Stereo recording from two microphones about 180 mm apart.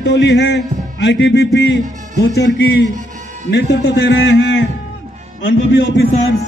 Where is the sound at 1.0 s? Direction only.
85° left.